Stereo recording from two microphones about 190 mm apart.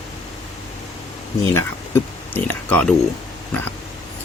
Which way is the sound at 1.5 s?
10° left (ahead or behind).